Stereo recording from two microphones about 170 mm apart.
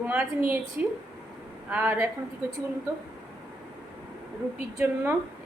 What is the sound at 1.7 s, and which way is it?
Speech, 10° right (ahead or behind).